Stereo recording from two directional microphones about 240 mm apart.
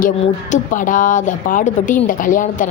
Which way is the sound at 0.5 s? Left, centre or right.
Left.